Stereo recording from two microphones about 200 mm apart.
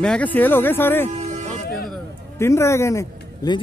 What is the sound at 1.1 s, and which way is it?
Music, 35° right (ahead or behind).